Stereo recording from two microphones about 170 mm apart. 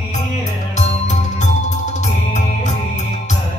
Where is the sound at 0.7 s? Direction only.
45° left (ahead or behind).